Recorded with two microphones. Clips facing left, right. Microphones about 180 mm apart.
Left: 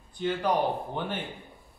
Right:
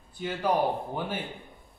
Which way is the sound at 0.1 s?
5° right (ahead or behind).